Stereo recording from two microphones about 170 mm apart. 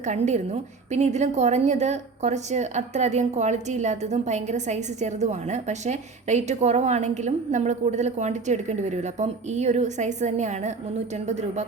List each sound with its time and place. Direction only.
0.0 s a woman's voice: 45° right (ahead or behind)